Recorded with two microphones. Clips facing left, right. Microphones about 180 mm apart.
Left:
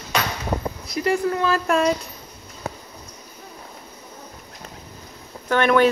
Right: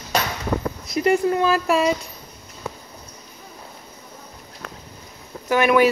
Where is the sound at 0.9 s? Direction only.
20° right (ahead or behind); by 1.9 s 5° right (ahead or behind).